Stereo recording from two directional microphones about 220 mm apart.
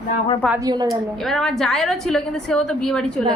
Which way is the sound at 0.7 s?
20° right (ahead or behind).